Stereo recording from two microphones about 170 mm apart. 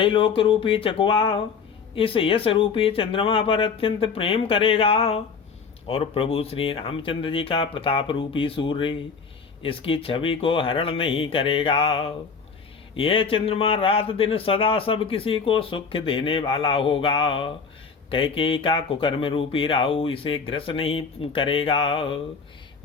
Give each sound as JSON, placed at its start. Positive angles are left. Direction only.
{"t": 0.0, "sound": "a man's voice", "side_deg": 30}